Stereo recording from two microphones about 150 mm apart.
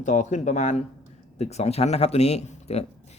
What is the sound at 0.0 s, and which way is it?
Speech, 55° left (ahead or behind).